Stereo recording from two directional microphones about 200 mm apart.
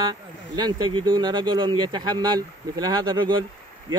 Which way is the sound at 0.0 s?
20° right (ahead or behind).